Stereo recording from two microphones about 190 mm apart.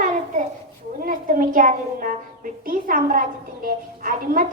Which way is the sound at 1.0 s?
45° right (ahead or behind).